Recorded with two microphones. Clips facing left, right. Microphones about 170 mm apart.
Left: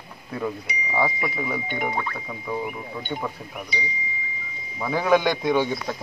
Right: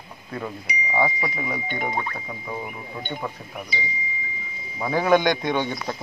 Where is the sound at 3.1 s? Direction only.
Centre (ahead or behind).